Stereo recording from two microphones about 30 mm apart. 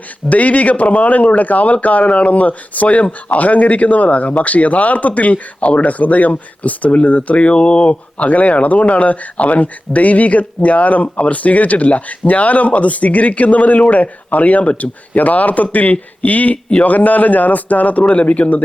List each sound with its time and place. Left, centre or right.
0.3 s speech: left
8.3 s speech: left
18.1 s speech: left